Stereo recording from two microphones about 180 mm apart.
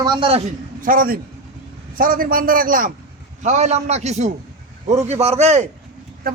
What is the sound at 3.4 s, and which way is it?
A man's voice, 40° right (ahead or behind).